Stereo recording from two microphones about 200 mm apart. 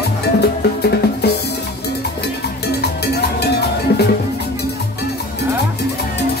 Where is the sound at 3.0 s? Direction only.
55° left (ahead or behind).